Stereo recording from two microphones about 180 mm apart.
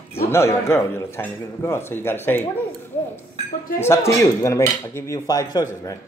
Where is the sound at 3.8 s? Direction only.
15° left (ahead or behind).